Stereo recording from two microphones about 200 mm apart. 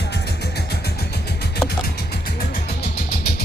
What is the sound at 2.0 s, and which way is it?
Music, 55° left (ahead or behind).